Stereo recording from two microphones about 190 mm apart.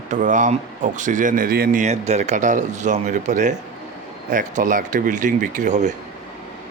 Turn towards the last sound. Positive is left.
turn(degrees=-40)  # may be behind; listen again after turning